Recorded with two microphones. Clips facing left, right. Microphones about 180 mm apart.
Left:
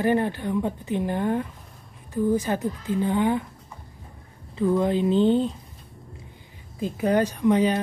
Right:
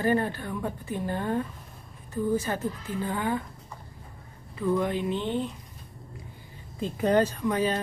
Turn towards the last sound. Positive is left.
turn(degrees=20)  # may be behind; listen again after turning